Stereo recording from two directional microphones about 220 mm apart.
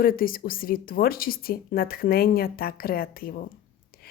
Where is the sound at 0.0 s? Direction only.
40° left (ahead or behind).